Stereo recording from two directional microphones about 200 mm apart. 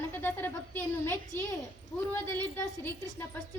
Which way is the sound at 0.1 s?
10° left (ahead or behind).